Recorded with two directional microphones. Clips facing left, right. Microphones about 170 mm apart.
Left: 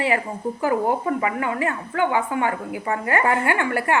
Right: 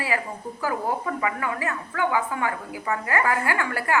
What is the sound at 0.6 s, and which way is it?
A woman's voice, 25° left (ahead or behind).